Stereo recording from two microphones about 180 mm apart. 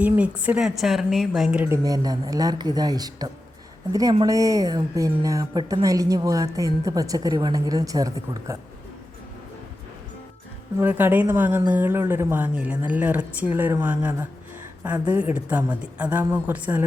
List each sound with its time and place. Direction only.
0.0 s a woman's voice: 10° right (ahead or behind)
10.8 s a woman's voice: 10° right (ahead or behind)